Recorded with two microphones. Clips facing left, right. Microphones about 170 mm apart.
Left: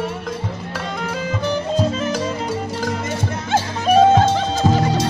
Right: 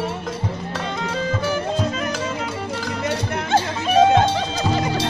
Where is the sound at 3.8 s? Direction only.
45° left (ahead or behind).